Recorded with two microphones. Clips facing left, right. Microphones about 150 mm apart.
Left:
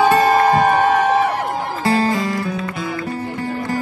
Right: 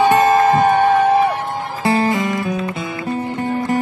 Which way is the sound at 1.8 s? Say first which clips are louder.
Right 1 dB; 20° right (ahead or behind).